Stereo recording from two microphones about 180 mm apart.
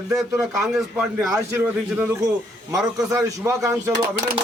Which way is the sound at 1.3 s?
15° right (ahead or behind).